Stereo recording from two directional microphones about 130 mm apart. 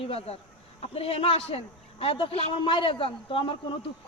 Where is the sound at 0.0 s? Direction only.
50° left (ahead or behind).